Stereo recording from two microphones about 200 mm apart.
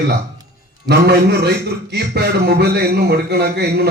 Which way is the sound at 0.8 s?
55° right (ahead or behind).